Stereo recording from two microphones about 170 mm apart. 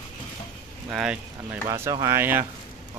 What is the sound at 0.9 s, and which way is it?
Speech, 5° right (ahead or behind).